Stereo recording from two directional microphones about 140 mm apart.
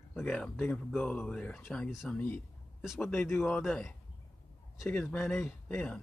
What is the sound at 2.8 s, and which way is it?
Speech, 5° right (ahead or behind).